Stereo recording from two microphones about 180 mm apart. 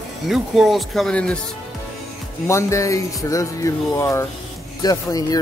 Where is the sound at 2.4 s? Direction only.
15° left (ahead or behind).